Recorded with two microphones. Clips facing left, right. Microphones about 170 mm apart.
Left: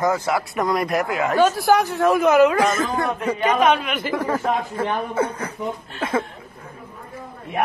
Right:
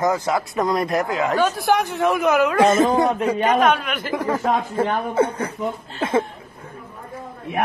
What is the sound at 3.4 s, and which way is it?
Speech, 10° left (ahead or behind).